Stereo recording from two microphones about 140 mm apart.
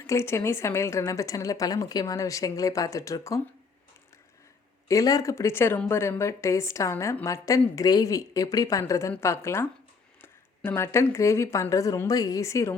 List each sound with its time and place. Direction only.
0.1 s speech: 20° left (ahead or behind)
4.9 s speech: 25° left (ahead or behind)